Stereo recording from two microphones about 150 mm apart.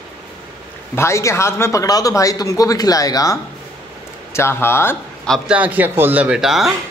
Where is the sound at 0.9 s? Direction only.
20° left (ahead or behind).